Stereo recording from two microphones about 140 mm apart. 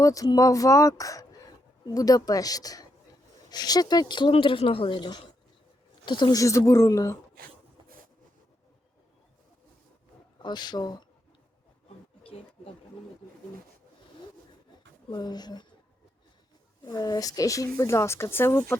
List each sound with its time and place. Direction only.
0.0 s speech: 25° left (ahead or behind)
10.3 s speech: 30° left (ahead or behind)
12.2 s a sound: 40° left (ahead or behind)
15.1 s speech: 30° left (ahead or behind)
16.8 s speech: 25° left (ahead or behind)